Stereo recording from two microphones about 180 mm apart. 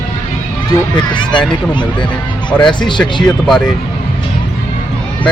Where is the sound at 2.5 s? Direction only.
5° left (ahead or behind).